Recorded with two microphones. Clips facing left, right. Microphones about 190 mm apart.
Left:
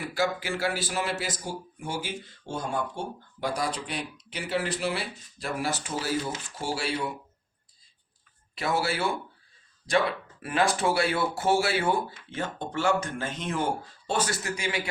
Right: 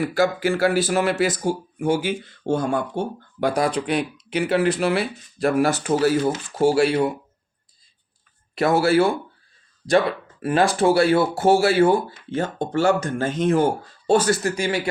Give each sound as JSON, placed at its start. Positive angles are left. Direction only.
{"t": 0.1, "sound": "speech", "side_deg": -50}
{"t": 8.5, "sound": "speech", "side_deg": -45}
{"t": 10.4, "sound": "speech", "side_deg": -35}